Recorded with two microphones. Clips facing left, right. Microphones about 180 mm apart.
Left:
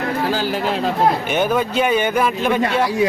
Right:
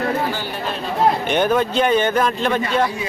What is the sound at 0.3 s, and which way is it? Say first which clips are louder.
Speech: left 6 dB; 90° left.